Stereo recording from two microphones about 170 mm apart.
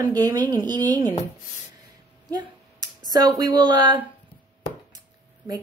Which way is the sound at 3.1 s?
25° right (ahead or behind).